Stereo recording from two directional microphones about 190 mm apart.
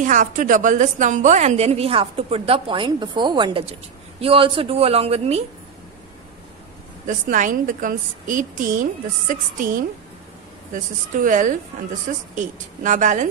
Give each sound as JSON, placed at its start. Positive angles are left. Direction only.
{"t": 0.0, "sound": "a woman's voice", "side_deg": -40}
{"t": 7.1, "sound": "a woman's voice", "side_deg": -40}